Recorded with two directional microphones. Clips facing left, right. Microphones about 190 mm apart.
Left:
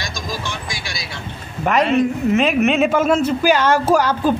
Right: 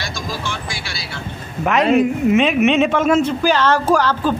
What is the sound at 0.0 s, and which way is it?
Vehicle, 15° left (ahead or behind).